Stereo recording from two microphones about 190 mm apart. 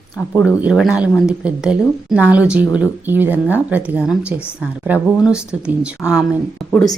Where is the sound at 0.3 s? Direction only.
5° right (ahead or behind).